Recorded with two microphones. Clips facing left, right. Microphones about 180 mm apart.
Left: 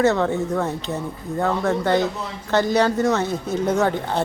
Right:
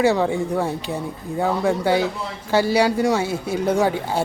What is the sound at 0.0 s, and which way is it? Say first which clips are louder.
Speech: even; 10° right (ahead or behind).